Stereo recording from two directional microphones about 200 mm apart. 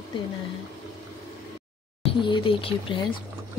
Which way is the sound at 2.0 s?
25° left (ahead or behind).